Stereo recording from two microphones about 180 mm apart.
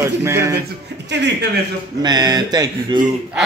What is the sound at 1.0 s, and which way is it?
Speech, 75° right (ahead or behind).